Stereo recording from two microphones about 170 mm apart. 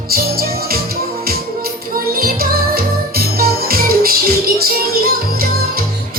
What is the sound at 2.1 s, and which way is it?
Music, 60° right (ahead or behind).